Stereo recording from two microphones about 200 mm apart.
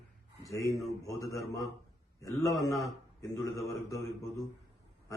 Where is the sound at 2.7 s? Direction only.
15° left (ahead or behind).